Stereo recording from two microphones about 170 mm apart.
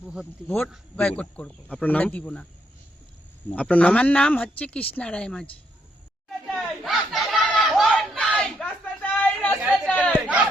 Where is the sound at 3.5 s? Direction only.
10° left (ahead or behind).